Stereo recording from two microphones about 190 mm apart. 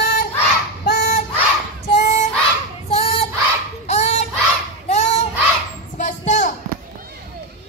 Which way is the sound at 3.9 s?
35° left (ahead or behind).